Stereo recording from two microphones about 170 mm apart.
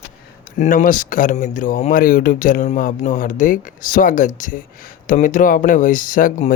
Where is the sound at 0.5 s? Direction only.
45° left (ahead or behind).